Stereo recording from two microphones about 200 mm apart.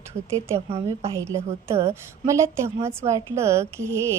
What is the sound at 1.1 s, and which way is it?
A woman's voice, 15° right (ahead or behind).